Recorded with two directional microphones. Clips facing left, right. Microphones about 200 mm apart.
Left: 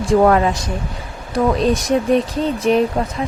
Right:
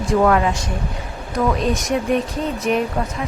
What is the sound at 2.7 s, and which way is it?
Speech, 30° left (ahead or behind).